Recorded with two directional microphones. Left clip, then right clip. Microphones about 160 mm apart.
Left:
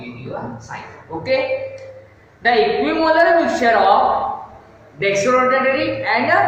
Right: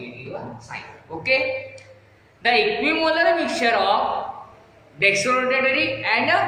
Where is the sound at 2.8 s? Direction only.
10° right (ahead or behind).